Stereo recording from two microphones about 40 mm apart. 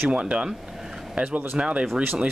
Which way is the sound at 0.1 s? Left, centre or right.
Right.